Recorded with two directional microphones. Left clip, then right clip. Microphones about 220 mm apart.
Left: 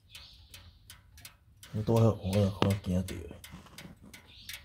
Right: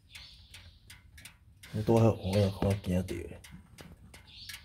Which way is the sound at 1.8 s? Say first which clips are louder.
Right 2 dB; 15° right (ahead or behind).